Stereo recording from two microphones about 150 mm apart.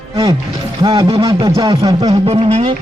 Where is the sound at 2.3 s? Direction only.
45° right (ahead or behind).